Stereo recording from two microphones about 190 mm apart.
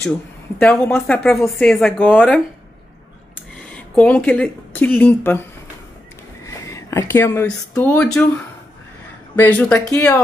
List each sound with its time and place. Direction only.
0.6 s speech: 10° left (ahead or behind)
3.6 s speech: 5° left (ahead or behind)
6.4 s speech: 15° left (ahead or behind)
9.4 s speech: 5° left (ahead or behind)